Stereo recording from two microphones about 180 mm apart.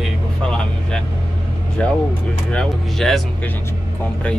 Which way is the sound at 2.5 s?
Centre (ahead or behind).